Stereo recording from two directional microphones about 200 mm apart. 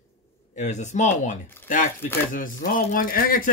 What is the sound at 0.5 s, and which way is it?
Speech, 35° left (ahead or behind).